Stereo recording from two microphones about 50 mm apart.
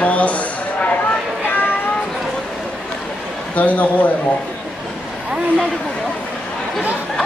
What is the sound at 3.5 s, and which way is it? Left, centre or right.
Speech, left.